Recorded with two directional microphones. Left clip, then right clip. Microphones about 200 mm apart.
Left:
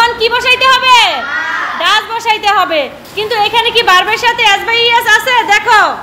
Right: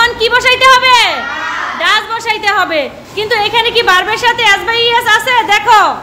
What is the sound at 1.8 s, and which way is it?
A woman's voice, 5° right (ahead or behind).